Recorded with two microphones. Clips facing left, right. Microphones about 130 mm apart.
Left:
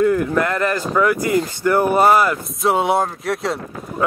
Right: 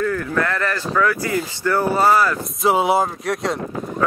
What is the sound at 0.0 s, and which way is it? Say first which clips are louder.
Speech: left 5 dB; 20° left (ahead or behind).